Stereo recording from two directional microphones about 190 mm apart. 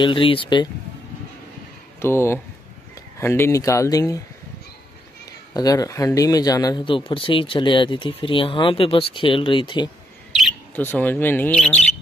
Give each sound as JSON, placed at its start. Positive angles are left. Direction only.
{"t": 0.0, "sound": "speech", "side_deg": 25}
{"t": 2.0, "sound": "speech", "side_deg": 15}
{"t": 5.5, "sound": "speech", "side_deg": 20}
{"t": 10.8, "sound": "speech", "side_deg": 10}